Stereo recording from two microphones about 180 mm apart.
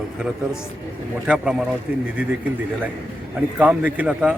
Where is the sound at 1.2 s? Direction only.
5° right (ahead or behind).